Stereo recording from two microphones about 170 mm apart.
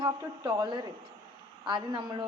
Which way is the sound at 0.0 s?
25° right (ahead or behind).